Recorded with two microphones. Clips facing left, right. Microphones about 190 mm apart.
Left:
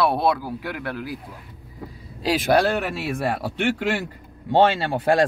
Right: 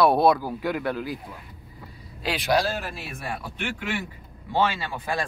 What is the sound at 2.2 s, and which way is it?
Speech, 40° left (ahead or behind).